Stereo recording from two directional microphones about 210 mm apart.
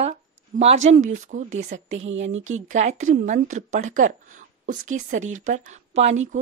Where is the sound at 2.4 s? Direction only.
35° right (ahead or behind).